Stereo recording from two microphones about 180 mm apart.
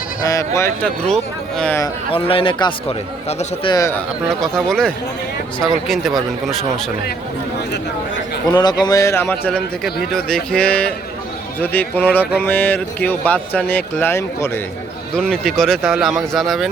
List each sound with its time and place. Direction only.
0.2 s speech: 20° left (ahead or behind)
1.0 s speech: 5° left (ahead or behind)
2.0 s a man's voice: 30° left (ahead or behind)
3.7 s speech: 15° left (ahead or behind)
4.4 s speech: 5° left (ahead or behind)
8.4 s speech: 25° left (ahead or behind)
9.3 s speech: 5° left (ahead or behind)
15.1 s speech: centre (ahead or behind)